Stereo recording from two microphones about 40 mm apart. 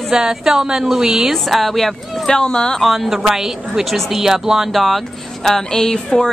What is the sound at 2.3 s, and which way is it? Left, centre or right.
Speech, left.